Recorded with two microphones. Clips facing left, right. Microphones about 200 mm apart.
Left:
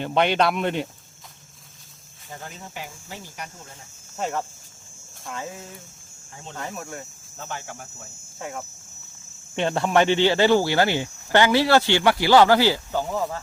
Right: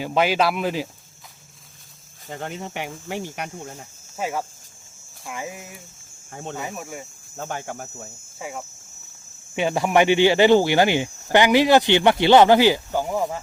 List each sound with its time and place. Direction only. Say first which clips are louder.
0.0 s speech: even; 5° right (ahead or behind)
2.3 s speech: right 7 dB; 70° right (ahead or behind)
4.2 s cricket: right 1 dB; 10° right (ahead or behind)
7.3 s speech: right 5 dB; 50° right (ahead or behind)
8.4 s speech: even; 5° right (ahead or behind)
9.6 s cricket: right 2 dB; 10° right (ahead or behind)